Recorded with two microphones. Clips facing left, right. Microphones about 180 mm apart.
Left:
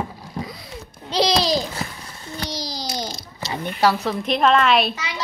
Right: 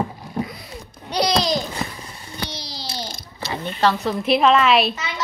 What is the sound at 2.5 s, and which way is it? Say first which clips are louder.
Babbling: left 5 dB; 40° left (ahead or behind).